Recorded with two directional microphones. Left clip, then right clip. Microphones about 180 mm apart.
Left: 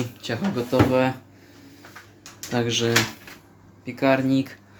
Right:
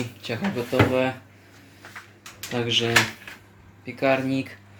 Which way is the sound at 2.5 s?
15° left (ahead or behind).